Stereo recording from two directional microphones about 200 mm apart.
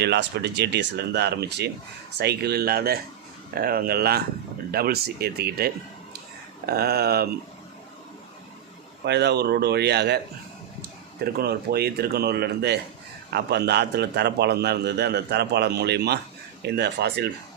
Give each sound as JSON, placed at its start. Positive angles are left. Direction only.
{"t": 0.0, "sound": "a man's voice", "side_deg": -55}
{"t": 9.0, "sound": "a man's voice", "side_deg": -55}
{"t": 11.2, "sound": "a man's voice", "side_deg": -50}